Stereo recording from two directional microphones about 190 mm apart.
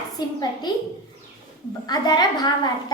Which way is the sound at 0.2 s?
25° left (ahead or behind).